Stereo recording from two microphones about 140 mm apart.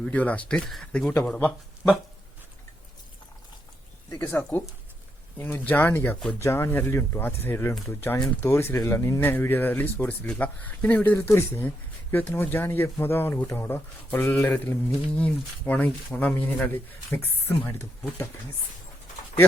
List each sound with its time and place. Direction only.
0.0 s speech: 10° left (ahead or behind)
4.3 s speech: 15° left (ahead or behind)